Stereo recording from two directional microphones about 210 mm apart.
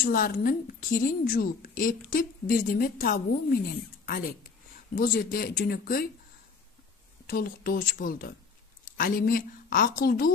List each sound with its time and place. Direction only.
0.0 s a woman's voice: 45° left (ahead or behind)
7.2 s a woman's voice: 45° left (ahead or behind)